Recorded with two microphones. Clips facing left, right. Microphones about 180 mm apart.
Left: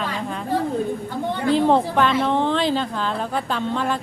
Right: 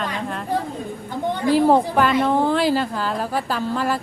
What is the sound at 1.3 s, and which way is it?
A woman's voice, 10° right (ahead or behind).